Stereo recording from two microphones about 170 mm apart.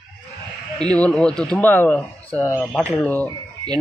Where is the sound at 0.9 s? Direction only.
5° left (ahead or behind).